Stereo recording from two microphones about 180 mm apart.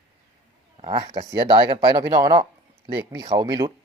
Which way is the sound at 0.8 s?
25° right (ahead or behind).